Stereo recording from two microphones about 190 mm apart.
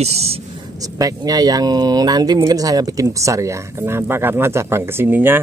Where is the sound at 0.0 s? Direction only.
35° right (ahead or behind).